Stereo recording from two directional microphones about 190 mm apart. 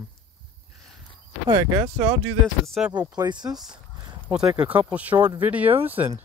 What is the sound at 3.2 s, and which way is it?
Speech, 20° right (ahead or behind).